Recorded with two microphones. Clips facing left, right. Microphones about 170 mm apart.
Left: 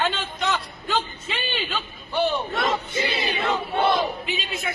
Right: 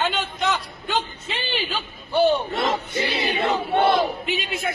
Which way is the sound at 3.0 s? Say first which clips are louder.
Right 2 dB; 65° right (ahead or behind).